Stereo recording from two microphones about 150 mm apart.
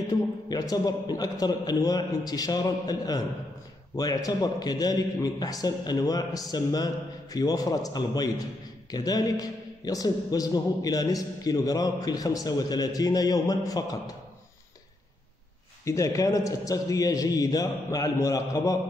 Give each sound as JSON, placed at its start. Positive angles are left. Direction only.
{"t": 0.1, "sound": "a man's voice", "side_deg": 25}
{"t": 15.8, "sound": "a man's voice", "side_deg": 20}